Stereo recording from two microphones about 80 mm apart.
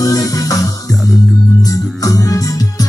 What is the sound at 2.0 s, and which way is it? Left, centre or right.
Music, left.